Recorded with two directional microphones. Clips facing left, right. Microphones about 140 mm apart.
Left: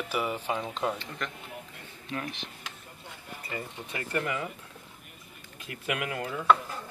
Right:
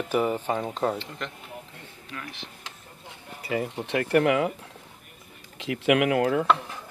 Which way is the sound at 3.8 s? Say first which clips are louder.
Right 11 dB; 70° right (ahead or behind).